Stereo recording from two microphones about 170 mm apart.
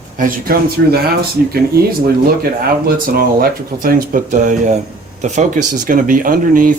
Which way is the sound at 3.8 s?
50° right (ahead or behind).